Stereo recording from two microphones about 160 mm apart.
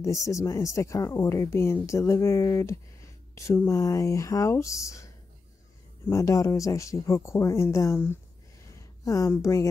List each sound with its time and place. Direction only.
0.0 s speech: 20° left (ahead or behind)